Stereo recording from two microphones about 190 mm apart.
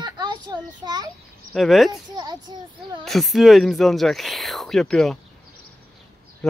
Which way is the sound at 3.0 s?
Centre (ahead or behind).